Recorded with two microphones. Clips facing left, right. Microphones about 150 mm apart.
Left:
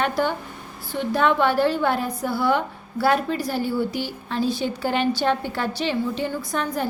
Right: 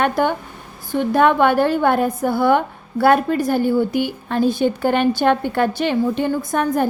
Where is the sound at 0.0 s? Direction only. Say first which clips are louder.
Right 5 dB; 55° right (ahead or behind).